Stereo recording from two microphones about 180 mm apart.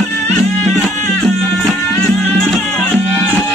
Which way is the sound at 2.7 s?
10° left (ahead or behind).